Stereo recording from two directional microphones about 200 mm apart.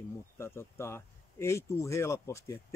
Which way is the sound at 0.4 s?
15° left (ahead or behind).